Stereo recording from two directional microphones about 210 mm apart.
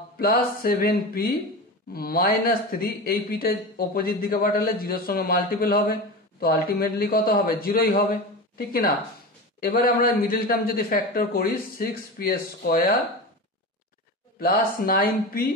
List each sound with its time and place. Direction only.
0.2 s speech: 45° left (ahead or behind)
14.4 s speech: 45° left (ahead or behind)